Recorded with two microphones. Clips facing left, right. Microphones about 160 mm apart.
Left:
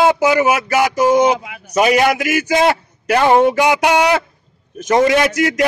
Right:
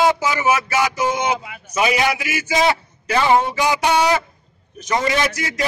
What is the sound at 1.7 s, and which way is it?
A man's voice, 50° left (ahead or behind).